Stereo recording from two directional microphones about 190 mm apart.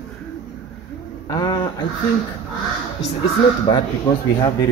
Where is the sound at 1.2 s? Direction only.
25° left (ahead or behind).